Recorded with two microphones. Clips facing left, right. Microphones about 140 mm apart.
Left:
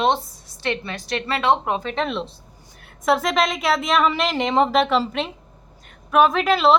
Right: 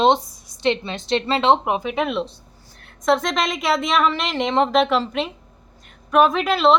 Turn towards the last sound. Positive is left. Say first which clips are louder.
# even
turn(degrees=0)  # may be behind; listen again after turning